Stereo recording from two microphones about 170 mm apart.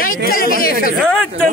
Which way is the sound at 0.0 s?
55° left (ahead or behind).